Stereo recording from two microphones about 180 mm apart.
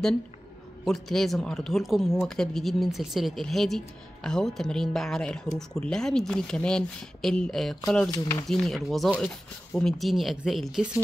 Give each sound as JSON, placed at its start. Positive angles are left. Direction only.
{"t": 0.8, "sound": "speech", "side_deg": 0}
{"t": 8.1, "sound": "speech", "side_deg": 15}
{"t": 8.5, "sound": "speech", "side_deg": 0}